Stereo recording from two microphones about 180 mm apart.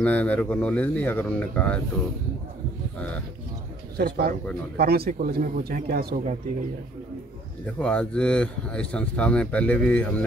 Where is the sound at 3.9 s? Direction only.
60° right (ahead or behind).